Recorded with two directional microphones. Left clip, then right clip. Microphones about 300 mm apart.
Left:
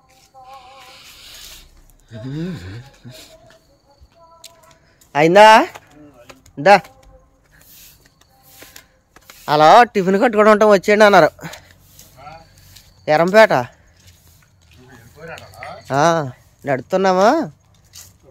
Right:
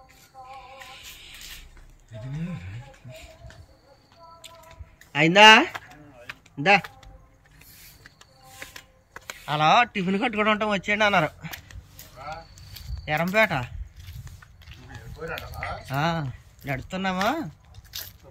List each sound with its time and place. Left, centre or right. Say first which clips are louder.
0.7 s music: left 2 dB; centre
2.0 s a man's voice: left 10 dB; centre
5.1 s a man's voice: left 6 dB; centre
9.5 s a man's voice: left 10 dB; centre
13.0 s a man's voice: left 11 dB; centre
15.9 s a man's voice: left 13 dB; centre
17.9 s a sound: right 4 dB; centre